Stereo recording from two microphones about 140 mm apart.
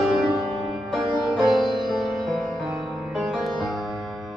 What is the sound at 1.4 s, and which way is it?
Music, centre (ahead or behind).